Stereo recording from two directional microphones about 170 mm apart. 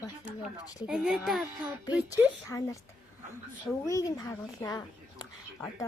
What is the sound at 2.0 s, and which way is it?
Speech, 20° left (ahead or behind).